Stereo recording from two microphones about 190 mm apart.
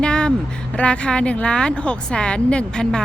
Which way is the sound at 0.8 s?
5° left (ahead or behind).